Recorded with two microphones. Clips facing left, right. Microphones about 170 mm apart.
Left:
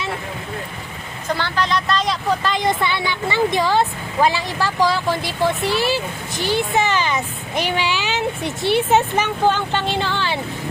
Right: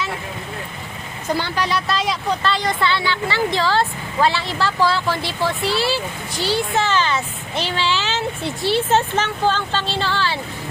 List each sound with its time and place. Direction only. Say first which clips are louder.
1.3 s speech: even; 10° right (ahead or behind)
2.4 s speech: left 1 dB; 15° left (ahead or behind)